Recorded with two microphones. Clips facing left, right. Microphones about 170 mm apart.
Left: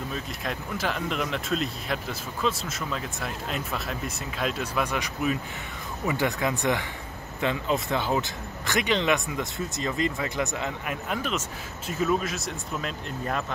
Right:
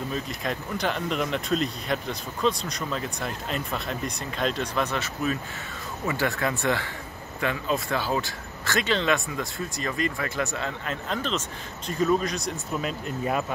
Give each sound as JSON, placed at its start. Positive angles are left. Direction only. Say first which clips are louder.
{"t": 0.1, "sound": "speech", "louder": "right 3 dB", "side_deg": 0}